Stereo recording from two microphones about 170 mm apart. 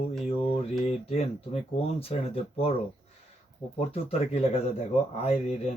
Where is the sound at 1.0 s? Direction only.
35° left (ahead or behind).